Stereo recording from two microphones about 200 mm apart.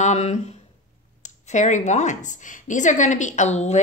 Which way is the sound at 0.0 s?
35° left (ahead or behind).